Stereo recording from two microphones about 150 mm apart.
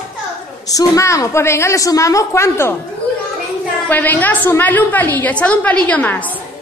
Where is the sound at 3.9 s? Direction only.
10° left (ahead or behind).